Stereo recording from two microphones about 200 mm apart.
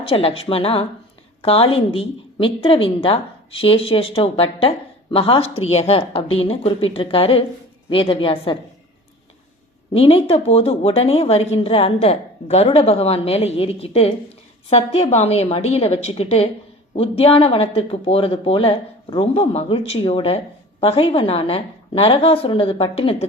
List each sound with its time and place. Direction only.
0.0 s a woman's voice: 30° left (ahead or behind)
9.9 s a woman's voice: 30° left (ahead or behind)